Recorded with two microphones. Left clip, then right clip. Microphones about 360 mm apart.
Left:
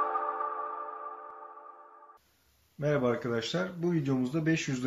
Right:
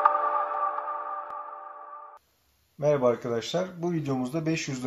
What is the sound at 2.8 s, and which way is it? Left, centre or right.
Speech, centre.